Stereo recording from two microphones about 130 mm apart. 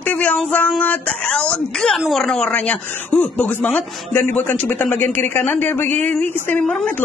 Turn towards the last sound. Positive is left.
turn(degrees=10)  # may be behind; listen again after turning